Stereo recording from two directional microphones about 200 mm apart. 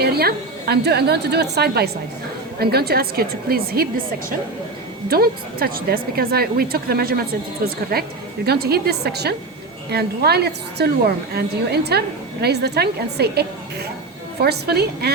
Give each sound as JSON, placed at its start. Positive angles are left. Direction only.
{"t": 0.0, "sound": "a woman's voice", "side_deg": -50}
{"t": 14.4, "sound": "speech", "side_deg": -55}